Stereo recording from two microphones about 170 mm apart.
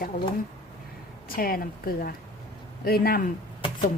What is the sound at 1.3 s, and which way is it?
Speech, 60° left (ahead or behind).